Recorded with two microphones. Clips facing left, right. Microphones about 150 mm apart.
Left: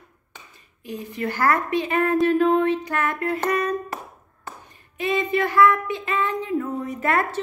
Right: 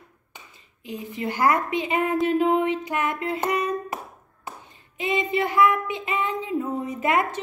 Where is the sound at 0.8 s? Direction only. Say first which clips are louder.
Left 1 dB; 20° right (ahead or behind).